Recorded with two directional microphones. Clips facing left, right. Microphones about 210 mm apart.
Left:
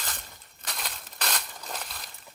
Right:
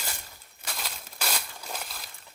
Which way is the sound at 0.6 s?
Centre (ahead or behind).